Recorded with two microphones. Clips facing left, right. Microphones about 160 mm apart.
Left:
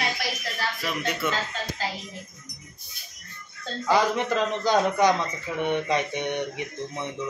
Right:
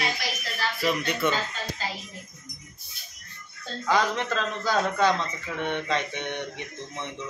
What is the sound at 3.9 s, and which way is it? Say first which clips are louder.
A man's voice: left 2 dB; 15° left (ahead or behind).